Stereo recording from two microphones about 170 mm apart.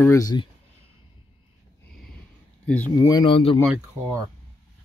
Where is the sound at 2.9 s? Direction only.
20° left (ahead or behind).